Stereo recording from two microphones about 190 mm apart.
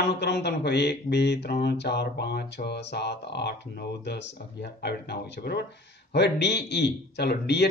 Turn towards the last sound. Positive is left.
turn(degrees=60)  # may be behind; listen again after turning